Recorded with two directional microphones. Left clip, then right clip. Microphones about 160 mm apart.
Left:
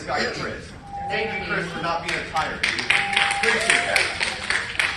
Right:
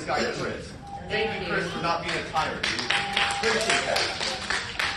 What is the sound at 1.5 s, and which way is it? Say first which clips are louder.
Speech: even; 10° right (ahead or behind).